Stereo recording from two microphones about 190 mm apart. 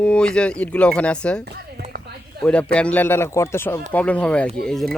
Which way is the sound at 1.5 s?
55° right (ahead or behind).